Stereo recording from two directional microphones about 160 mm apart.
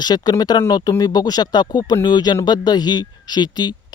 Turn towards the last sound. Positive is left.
turn(degrees=25)  # may be behind; listen again after turning